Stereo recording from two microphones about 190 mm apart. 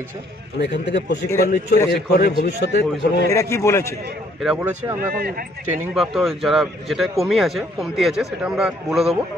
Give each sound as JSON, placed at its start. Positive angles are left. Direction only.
{"t": 0.6, "sound": "a man's voice", "side_deg": 70}
{"t": 1.4, "sound": "a man's voice", "side_deg": 50}
{"t": 3.3, "sound": "a man's voice", "side_deg": 15}
{"t": 4.6, "sound": "speech", "side_deg": -15}
{"t": 5.1, "sound": "a man's voice", "side_deg": -50}
{"t": 5.9, "sound": "speech", "side_deg": 0}